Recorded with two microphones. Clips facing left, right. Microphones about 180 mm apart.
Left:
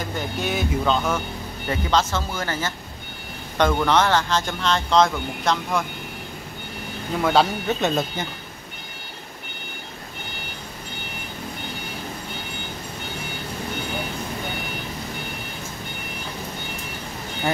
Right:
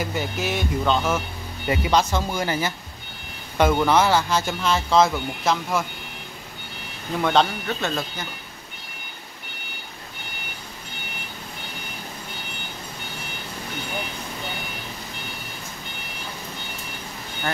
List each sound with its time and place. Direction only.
0.0 s speech: 5° right (ahead or behind)
7.2 s speech: 5° left (ahead or behind)
7.6 s speech: 20° left (ahead or behind)